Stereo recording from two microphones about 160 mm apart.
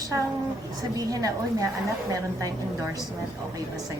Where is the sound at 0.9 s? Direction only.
20° right (ahead or behind).